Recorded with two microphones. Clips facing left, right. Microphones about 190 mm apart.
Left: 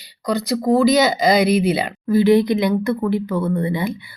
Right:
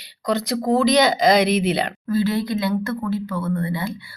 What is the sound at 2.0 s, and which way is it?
Speech, 15° left (ahead or behind).